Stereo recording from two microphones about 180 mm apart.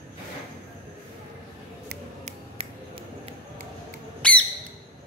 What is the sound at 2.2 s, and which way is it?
Finger snapping, 35° right (ahead or behind).